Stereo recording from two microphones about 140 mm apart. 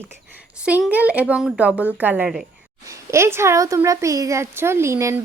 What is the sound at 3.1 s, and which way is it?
A woman's voice, 20° right (ahead or behind).